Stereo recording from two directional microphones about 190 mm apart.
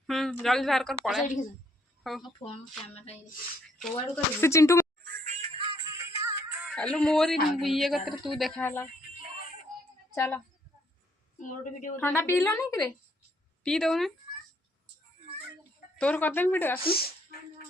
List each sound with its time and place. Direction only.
0.1 s a woman's voice: centre (ahead or behind)
2.2 s speech: 30° left (ahead or behind)
4.1 s speech: 15° left (ahead or behind)
5.0 s music: 40° right (ahead or behind)
5.9 s music: 15° right (ahead or behind)
6.7 s a woman's voice: 5° left (ahead or behind)
8.6 s speech: 15° left (ahead or behind)
10.2 s speech: 5° left (ahead or behind)
11.3 s a woman's voice: 40° left (ahead or behind)
11.9 s speech: 10° left (ahead or behind)
13.7 s a woman's voice: centre (ahead or behind)
16.0 s speech: 10° left (ahead or behind)
16.8 s a woman's voice: 55° left (ahead or behind)